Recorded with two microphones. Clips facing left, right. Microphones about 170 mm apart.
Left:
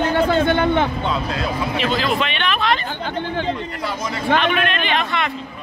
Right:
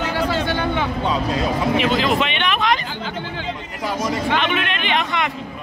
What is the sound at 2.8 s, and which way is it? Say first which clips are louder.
Speech: left 3 dB; 55° left (ahead or behind).